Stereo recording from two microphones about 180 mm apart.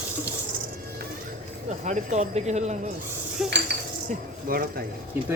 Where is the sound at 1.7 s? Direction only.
40° right (ahead or behind).